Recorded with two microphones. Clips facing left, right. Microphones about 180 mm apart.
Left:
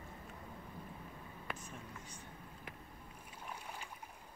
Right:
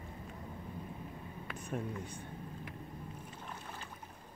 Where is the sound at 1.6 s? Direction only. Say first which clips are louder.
Right 11 dB; 60° right (ahead or behind).